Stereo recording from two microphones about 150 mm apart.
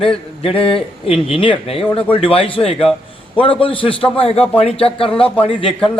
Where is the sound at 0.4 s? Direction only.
40° left (ahead or behind).